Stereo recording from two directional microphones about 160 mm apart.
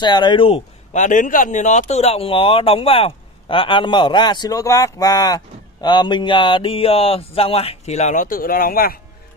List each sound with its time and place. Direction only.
0.0 s speech: 30° left (ahead or behind)
0.9 s speech: 55° left (ahead or behind)